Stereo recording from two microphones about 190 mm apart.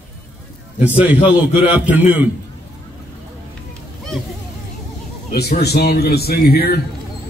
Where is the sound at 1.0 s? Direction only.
10° right (ahead or behind).